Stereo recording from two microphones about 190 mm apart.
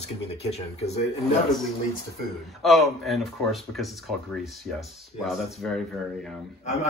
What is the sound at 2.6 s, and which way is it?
Speech, centre (ahead or behind).